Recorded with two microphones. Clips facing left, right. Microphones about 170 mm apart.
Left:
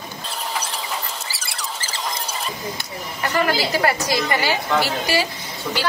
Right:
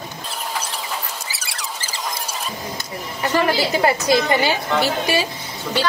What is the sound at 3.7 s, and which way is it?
Speech, 20° right (ahead or behind).